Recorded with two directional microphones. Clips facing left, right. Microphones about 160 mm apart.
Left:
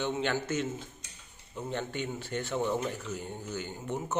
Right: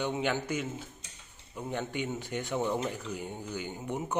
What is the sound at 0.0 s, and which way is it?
A man's voice, 15° right (ahead or behind).